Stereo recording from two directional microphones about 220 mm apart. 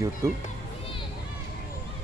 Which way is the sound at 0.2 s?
15° right (ahead or behind).